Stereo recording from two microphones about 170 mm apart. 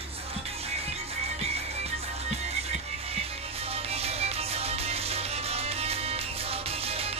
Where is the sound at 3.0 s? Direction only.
35° right (ahead or behind).